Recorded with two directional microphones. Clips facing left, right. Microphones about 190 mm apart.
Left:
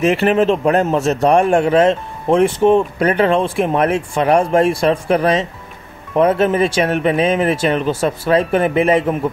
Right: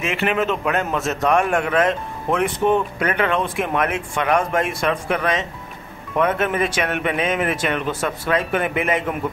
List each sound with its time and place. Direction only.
0.0 s a man's voice: 35° left (ahead or behind)